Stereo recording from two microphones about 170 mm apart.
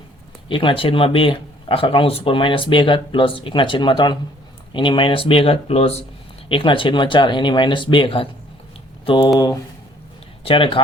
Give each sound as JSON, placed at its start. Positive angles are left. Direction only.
{"t": 0.4, "sound": "speech", "side_deg": 30}
{"t": 10.4, "sound": "speech", "side_deg": 30}